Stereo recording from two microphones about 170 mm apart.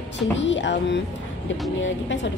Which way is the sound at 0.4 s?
90° left.